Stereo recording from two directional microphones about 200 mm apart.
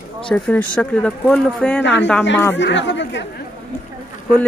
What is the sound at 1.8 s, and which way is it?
Speech, 60° left (ahead or behind).